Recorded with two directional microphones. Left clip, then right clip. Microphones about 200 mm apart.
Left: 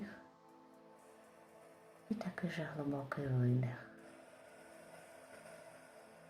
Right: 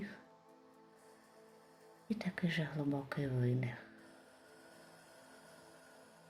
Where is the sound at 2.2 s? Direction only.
35° right (ahead or behind).